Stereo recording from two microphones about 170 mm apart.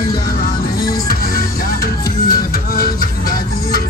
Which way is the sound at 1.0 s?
60° left (ahead or behind).